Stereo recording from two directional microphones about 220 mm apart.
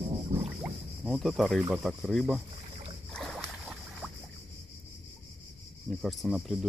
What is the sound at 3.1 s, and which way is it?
Boat, centre (ahead or behind).